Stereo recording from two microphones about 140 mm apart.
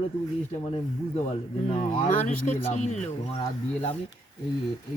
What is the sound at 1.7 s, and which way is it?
Speech, 65° left (ahead or behind).